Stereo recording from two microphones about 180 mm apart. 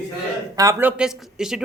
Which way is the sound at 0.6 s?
15° right (ahead or behind).